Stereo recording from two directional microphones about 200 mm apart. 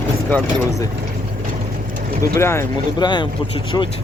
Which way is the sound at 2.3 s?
15° left (ahead or behind).